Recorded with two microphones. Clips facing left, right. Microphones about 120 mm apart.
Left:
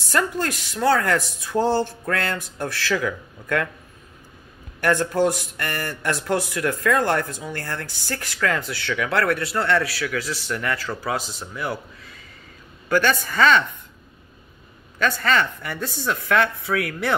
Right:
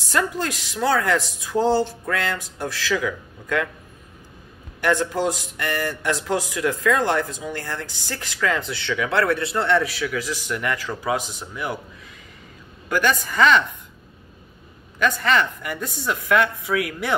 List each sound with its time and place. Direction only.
0.0 s speech: 15° right (ahead or behind)
4.7 s speech: 15° right (ahead or behind)
15.2 s speech: 15° right (ahead or behind)